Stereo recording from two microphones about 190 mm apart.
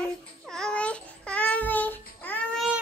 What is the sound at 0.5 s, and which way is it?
Babbling, 5° left (ahead or behind).